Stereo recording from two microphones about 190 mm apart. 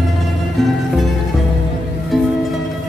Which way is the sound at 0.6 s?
Centre (ahead or behind).